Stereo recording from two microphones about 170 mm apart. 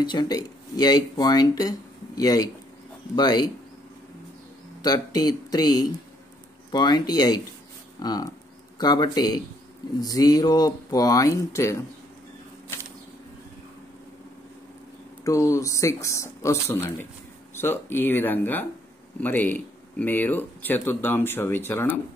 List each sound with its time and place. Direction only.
0.0 s speech: 25° left (ahead or behind)
4.8 s speech: 25° left (ahead or behind)
15.2 s speech: 20° left (ahead or behind)